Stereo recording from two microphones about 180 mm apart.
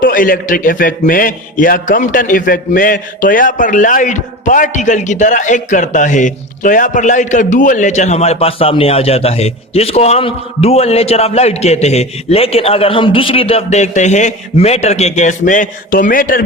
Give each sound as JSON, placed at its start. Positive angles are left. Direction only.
{"t": 0.0, "sound": "a man's voice", "side_deg": 50}